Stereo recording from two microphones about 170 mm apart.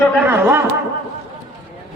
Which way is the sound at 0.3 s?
15° right (ahead or behind).